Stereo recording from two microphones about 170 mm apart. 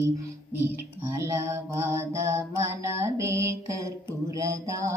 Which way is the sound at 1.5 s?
15° right (ahead or behind).